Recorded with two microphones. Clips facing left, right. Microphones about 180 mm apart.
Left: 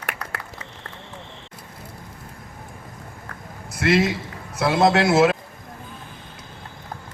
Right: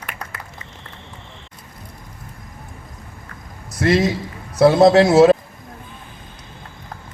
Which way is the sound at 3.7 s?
40° right (ahead or behind).